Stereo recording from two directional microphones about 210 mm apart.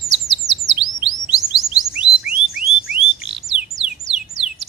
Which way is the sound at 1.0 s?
Centre (ahead or behind).